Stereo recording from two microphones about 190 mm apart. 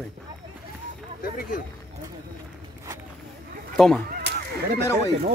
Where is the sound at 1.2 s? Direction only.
50° left (ahead or behind).